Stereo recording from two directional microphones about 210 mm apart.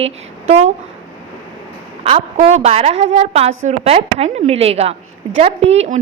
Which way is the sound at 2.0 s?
25° right (ahead or behind).